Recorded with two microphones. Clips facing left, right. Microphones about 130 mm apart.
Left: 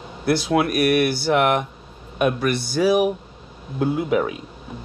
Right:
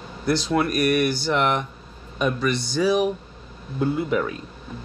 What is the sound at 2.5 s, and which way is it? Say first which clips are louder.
Speech: left 2 dB; 10° left (ahead or behind).